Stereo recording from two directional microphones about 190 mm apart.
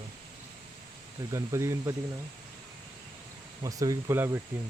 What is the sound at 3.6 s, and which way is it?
Speech, 20° right (ahead or behind).